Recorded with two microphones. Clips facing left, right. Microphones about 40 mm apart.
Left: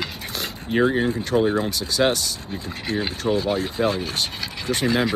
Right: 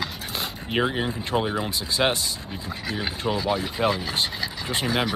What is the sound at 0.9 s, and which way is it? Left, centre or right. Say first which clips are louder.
Speech: left 5 dB; centre.